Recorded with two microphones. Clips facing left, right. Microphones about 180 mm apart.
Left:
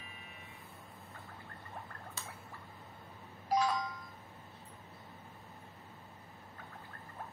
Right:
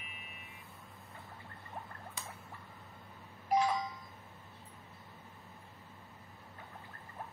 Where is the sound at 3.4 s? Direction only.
20° right (ahead or behind).